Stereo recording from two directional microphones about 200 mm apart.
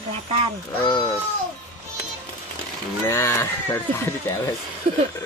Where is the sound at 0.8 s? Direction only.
25° left (ahead or behind).